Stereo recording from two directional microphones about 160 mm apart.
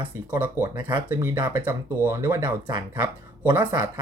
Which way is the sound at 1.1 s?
15° right (ahead or behind).